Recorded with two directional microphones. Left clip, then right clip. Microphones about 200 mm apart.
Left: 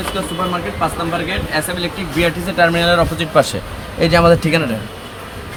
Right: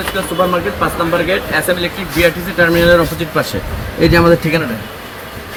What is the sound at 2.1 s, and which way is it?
Speech, 35° left (ahead or behind).